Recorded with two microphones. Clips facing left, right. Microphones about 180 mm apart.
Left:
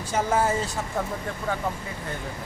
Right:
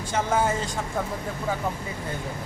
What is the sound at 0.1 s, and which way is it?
Speech, 5° left (ahead or behind).